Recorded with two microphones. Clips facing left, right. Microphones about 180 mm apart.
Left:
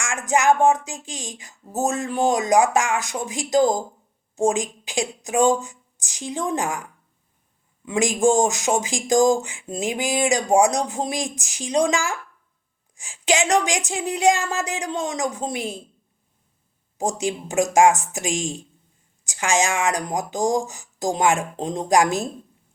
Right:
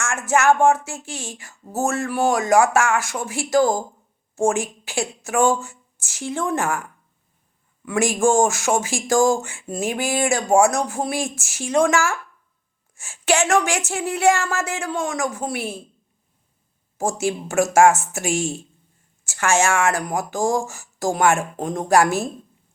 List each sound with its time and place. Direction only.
0.0 s speech: 15° left (ahead or behind)
7.9 s speech: 15° left (ahead or behind)
17.0 s speech: 15° left (ahead or behind)